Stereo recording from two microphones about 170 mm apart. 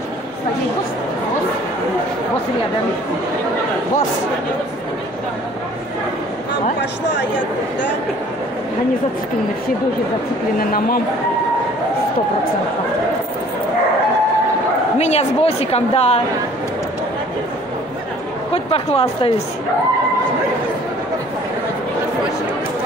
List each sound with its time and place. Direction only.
10.6 s speech: 60° left (ahead or behind)
15.0 s a woman's voice: 40° left (ahead or behind)
18.5 s speech: 35° left (ahead or behind)